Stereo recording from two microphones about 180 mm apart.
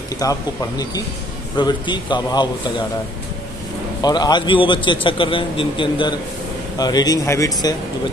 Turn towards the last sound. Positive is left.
turn(degrees=20)  # may be behind; listen again after turning